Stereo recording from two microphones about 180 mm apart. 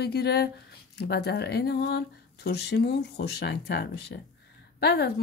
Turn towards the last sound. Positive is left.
turn(degrees=65)  # may be behind; listen again after turning